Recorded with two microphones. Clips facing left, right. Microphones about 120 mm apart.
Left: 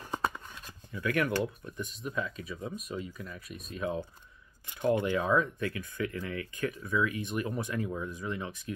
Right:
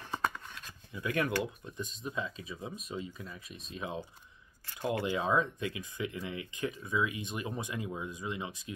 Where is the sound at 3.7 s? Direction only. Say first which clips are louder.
Left 5 dB; 20° right (ahead or behind).